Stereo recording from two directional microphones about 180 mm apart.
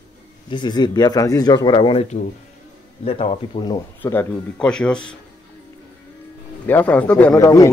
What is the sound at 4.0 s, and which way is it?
Speech, 10° left (ahead or behind).